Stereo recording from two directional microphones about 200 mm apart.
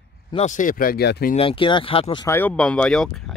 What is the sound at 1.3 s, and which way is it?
Speech, 25° left (ahead or behind).